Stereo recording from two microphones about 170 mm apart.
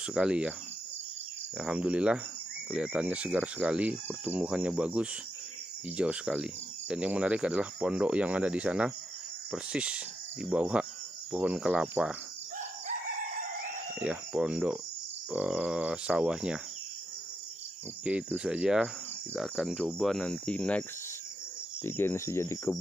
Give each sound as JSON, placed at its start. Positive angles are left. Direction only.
{"t": 0.1, "sound": "speech", "side_deg": -5}
{"t": 1.6, "sound": "speech", "side_deg": -5}
{"t": 13.9, "sound": "speech", "side_deg": -5}
{"t": 18.0, "sound": "speech", "side_deg": -5}
{"t": 21.8, "sound": "speech", "side_deg": 15}